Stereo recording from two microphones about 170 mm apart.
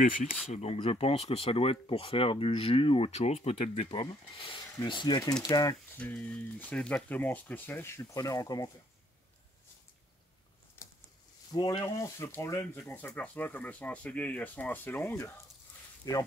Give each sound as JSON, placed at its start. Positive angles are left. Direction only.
{"t": 0.0, "sound": "speech", "side_deg": 50}
{"t": 0.5, "sound": "speech", "side_deg": 40}
{"t": 5.9, "sound": "speech", "side_deg": 10}
{"t": 10.8, "sound": "a sound", "side_deg": 15}
{"t": 11.5, "sound": "speech", "side_deg": 25}